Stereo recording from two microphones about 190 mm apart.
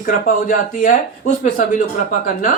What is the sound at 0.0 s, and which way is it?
A man's voice, 45° left (ahead or behind).